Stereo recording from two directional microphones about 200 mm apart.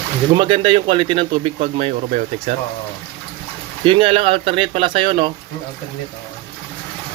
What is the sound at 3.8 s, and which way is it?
Speech, 25° right (ahead or behind).